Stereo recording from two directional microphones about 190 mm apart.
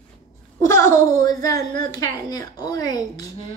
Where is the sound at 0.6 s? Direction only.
15° left (ahead or behind).